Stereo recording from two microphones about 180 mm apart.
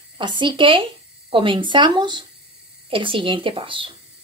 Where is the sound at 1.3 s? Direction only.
30° right (ahead or behind).